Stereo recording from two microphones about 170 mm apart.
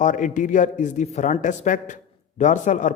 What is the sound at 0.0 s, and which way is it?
Speech, 50° left (ahead or behind).